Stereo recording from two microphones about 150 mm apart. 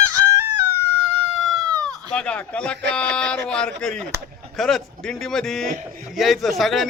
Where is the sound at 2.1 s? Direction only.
10° left (ahead or behind).